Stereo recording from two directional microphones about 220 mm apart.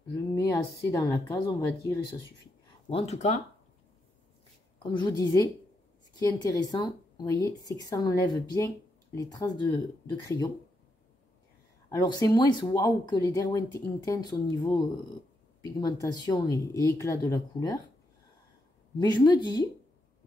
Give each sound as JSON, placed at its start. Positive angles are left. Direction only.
{"t": 0.4, "sound": "speech", "side_deg": 15}
{"t": 2.9, "sound": "a woman's voice", "side_deg": 30}
{"t": 5.0, "sound": "speech", "side_deg": 15}
{"t": 11.9, "sound": "speech", "side_deg": 20}
{"t": 18.9, "sound": "a woman's voice", "side_deg": 20}